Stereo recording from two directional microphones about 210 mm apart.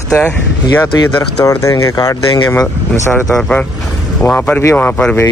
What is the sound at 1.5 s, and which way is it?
Speech, 15° left (ahead or behind).